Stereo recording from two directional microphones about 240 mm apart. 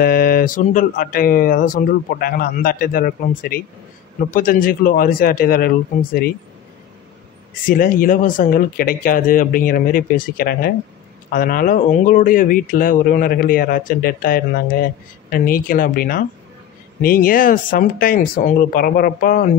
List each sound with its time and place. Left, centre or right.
0.0 s speech: left
7.6 s speech: left